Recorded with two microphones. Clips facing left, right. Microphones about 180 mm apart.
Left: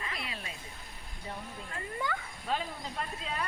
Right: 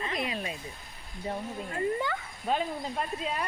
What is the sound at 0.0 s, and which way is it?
Cat, 20° right (ahead or behind).